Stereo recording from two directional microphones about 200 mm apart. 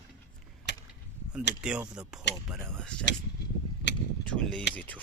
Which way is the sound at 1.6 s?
5° right (ahead or behind).